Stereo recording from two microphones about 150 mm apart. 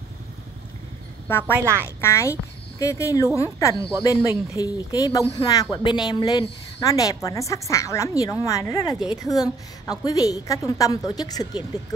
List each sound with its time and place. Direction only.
1.2 s a woman's voice: 15° left (ahead or behind)
1.6 s speech: 15° right (ahead or behind)
2.0 s speech: 20° left (ahead or behind)